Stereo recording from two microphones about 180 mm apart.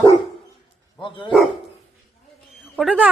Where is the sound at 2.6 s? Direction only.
Centre (ahead or behind).